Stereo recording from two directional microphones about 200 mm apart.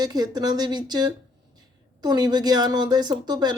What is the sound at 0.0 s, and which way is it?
Speech, 20° right (ahead or behind).